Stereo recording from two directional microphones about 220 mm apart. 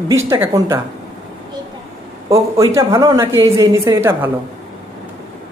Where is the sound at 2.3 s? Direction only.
15° right (ahead or behind).